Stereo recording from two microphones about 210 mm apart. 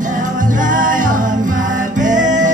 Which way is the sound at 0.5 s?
40° right (ahead or behind).